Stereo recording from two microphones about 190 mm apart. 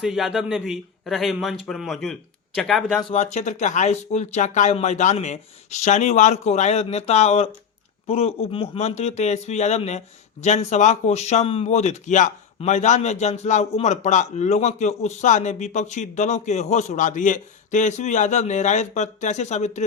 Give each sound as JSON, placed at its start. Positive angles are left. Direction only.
{"t": 0.0, "sound": "a man's voice", "side_deg": 0}
{"t": 3.0, "sound": "speech", "side_deg": 30}